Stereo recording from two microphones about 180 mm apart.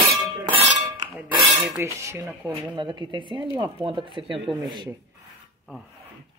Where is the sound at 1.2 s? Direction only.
10° right (ahead or behind).